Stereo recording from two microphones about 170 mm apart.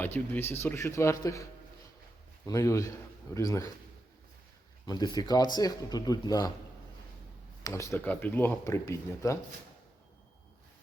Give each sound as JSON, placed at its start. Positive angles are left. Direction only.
{"t": 0.0, "sound": "speech", "side_deg": 10}
{"t": 2.5, "sound": "speech", "side_deg": 20}
{"t": 4.9, "sound": "speech", "side_deg": 25}
{"t": 7.6, "sound": "speech", "side_deg": 15}